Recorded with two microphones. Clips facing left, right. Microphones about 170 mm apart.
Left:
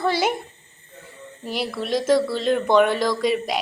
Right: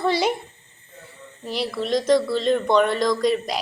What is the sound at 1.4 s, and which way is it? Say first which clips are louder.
Speech: right 1 dB; centre (ahead or behind).